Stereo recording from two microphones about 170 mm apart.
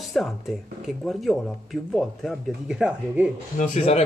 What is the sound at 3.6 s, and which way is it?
Speech, 40° left (ahead or behind).